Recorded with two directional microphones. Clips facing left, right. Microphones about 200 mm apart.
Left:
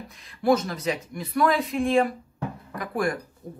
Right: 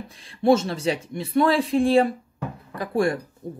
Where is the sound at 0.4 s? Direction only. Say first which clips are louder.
Right 3 dB; 25° right (ahead or behind).